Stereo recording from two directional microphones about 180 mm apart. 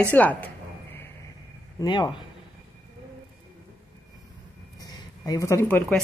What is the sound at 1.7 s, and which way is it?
Speech, 25° left (ahead or behind).